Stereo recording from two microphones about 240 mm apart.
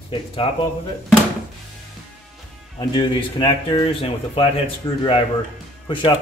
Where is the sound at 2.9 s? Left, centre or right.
Centre.